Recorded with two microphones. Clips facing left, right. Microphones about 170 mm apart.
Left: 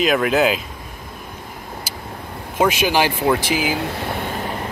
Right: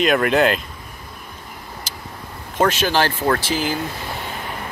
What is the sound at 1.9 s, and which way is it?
Vehicle, 10° left (ahead or behind).